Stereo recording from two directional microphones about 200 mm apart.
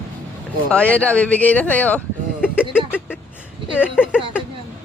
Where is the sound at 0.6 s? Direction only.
5° left (ahead or behind).